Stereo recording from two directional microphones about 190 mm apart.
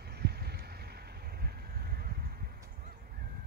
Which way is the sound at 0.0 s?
55° right (ahead or behind).